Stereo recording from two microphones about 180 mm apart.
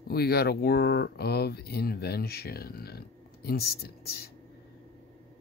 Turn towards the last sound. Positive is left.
turn(degrees=60)  # may be behind; listen again after turning